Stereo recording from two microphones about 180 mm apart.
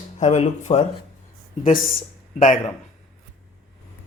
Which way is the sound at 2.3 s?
45° left (ahead or behind).